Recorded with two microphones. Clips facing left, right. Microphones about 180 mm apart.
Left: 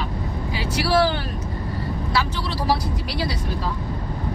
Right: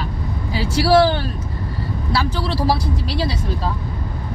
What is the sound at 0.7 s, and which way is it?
Speech, 30° right (ahead or behind).